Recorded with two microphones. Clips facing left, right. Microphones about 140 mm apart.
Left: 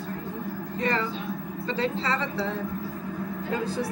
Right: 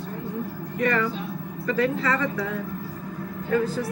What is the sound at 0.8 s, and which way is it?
A woman's voice, 30° left (ahead or behind).